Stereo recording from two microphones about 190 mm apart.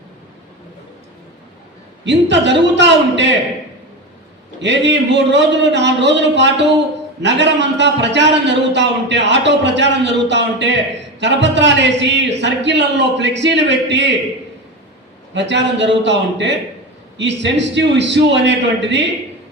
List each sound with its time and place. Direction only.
2.0 s a man's voice: 70° right (ahead or behind)
4.6 s a man's voice: 70° right (ahead or behind)
15.3 s a man's voice: 70° right (ahead or behind)